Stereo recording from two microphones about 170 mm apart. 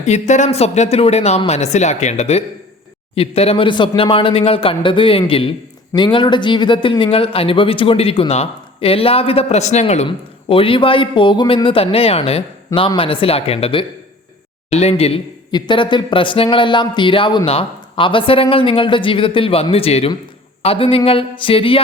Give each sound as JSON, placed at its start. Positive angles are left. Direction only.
{"t": 0.0, "sound": "speech", "side_deg": 40}